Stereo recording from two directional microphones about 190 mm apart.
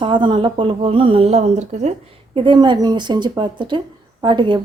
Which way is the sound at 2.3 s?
25° right (ahead or behind).